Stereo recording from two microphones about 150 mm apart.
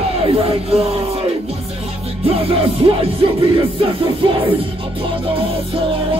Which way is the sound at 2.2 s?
40° right (ahead or behind).